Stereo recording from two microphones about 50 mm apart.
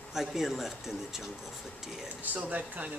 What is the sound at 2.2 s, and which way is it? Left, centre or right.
Speech, right.